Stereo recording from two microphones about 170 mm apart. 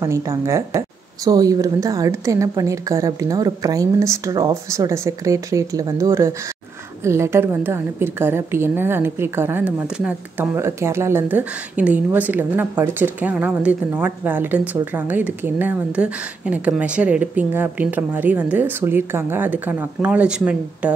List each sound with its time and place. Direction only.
0.0 s a woman's voice: 15° right (ahead or behind)